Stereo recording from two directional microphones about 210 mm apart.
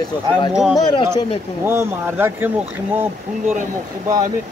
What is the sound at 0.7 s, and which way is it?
Speech, 20° left (ahead or behind).